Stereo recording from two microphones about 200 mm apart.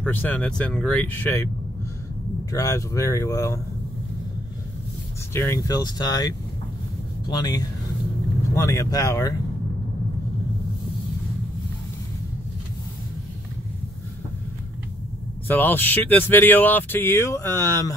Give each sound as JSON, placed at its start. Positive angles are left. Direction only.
{"t": 0.0, "sound": "speech", "side_deg": 10}
{"t": 2.5, "sound": "speech", "side_deg": 15}
{"t": 5.3, "sound": "speech", "side_deg": 15}
{"t": 15.4, "sound": "speech", "side_deg": 10}